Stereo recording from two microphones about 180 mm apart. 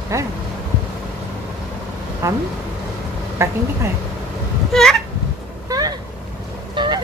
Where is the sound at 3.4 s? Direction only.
15° right (ahead or behind).